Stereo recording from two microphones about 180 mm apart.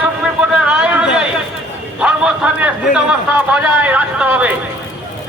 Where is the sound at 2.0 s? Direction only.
5° right (ahead or behind).